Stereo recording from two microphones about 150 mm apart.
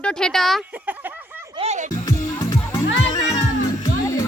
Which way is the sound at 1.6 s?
50° right (ahead or behind).